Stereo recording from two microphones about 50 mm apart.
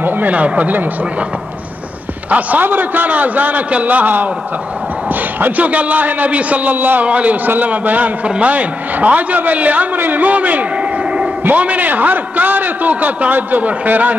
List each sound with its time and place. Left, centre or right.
0.0 s a sound: right
0.3 s a man's voice: right
2.2 s a man's voice: right
5.4 s a man's voice: right
7.1 s a man's voice: right